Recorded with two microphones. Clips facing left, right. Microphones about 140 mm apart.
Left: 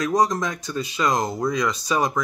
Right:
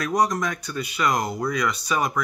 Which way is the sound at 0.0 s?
20° left (ahead or behind).